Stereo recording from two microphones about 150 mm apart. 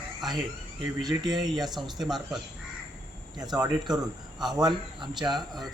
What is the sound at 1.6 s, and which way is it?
Speech, centre (ahead or behind).